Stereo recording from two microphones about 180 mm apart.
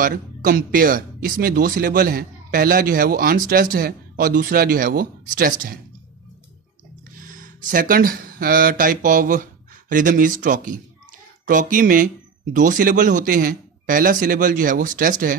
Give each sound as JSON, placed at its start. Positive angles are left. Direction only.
{"t": 0.0, "sound": "speech", "side_deg": -50}
{"t": 7.2, "sound": "speech", "side_deg": -50}